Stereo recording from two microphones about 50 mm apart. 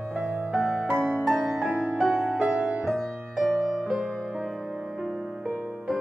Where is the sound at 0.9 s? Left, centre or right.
Centre.